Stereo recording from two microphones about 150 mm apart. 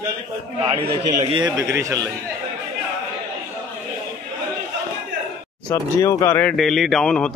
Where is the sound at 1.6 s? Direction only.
20° right (ahead or behind).